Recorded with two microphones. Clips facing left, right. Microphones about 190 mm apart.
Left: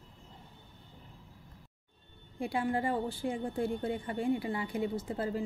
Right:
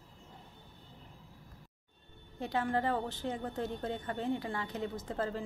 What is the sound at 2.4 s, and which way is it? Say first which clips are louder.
A woman's voice: left 1 dB; 10° left (ahead or behind).